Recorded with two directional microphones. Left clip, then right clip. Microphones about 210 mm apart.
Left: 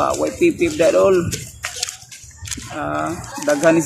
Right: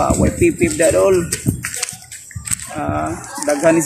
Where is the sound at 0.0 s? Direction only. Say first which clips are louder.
Right 1 dB; 15° left (ahead or behind).